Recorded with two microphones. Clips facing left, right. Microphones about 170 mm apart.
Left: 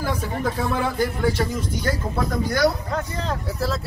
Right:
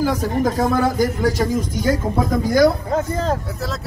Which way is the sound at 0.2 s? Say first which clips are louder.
Right 6 dB; 40° right (ahead or behind).